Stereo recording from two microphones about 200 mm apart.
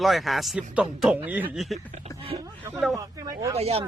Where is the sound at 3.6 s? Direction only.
30° right (ahead or behind).